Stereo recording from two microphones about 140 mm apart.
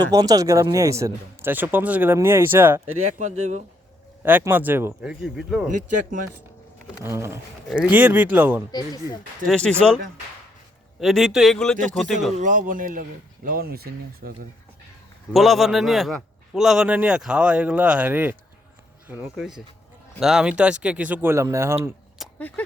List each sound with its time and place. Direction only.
0.1 s speech: 25° right (ahead or behind)
3.2 s speech: 55° right (ahead or behind)
4.2 s speech: 15° right (ahead or behind)
5.2 s a man's voice: centre (ahead or behind)
7.0 s speech: 20° right (ahead or behind)
7.7 s speech: 10° right (ahead or behind)
9.5 s a man's voice: 5° left (ahead or behind)
11.0 s a man's voice: centre (ahead or behind)
12.4 s speech: 75° right (ahead or behind); by 14.3 s 90° right
15.3 s a man's voice: centre (ahead or behind)
19.4 s a man's voice: centre (ahead or behind); by 21.8 s 20° right (ahead or behind)
22.4 s speech: 10° left (ahead or behind)